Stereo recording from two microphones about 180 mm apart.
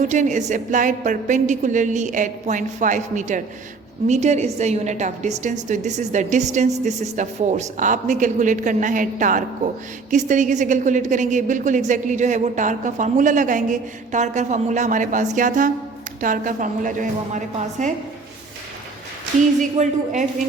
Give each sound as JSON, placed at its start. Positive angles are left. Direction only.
{"t": 0.1, "sound": "a woman's voice", "side_deg": -40}
{"t": 19.7, "sound": "a woman's voice", "side_deg": -40}